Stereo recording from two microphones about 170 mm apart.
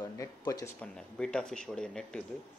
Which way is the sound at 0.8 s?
5° left (ahead or behind).